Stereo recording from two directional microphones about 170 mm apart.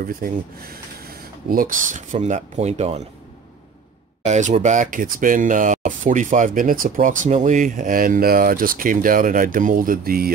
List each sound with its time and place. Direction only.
0.0 s speech: 60° right (ahead or behind); by 3.0 s 40° right (ahead or behind)
4.2 s speech: 45° right (ahead or behind); by 10.3 s 60° right (ahead or behind)